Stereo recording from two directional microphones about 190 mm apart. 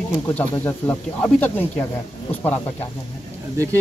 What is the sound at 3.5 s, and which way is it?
Speech, 15° right (ahead or behind).